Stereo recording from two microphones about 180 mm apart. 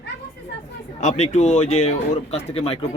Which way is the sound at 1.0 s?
40° left (ahead or behind).